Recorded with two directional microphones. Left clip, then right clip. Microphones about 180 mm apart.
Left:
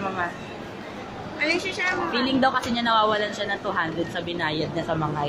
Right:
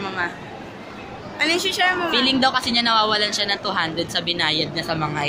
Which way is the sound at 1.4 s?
60° right (ahead or behind).